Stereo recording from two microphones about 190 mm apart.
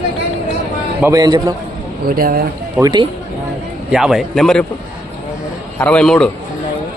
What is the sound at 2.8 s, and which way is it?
Speech, 20° right (ahead or behind).